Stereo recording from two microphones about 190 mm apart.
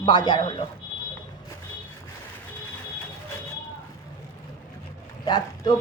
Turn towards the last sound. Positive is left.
turn(degrees=20)  # may be behind; listen again after turning